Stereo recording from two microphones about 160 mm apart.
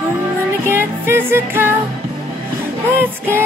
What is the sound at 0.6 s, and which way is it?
Music, 15° right (ahead or behind).